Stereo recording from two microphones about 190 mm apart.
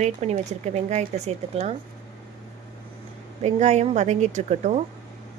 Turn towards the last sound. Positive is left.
turn(degrees=-40)  # may be behind; listen again after turning